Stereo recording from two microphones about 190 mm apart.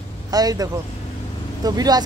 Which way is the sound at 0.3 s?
20° right (ahead or behind).